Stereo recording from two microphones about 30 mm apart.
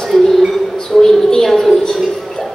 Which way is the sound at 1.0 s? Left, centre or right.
Centre.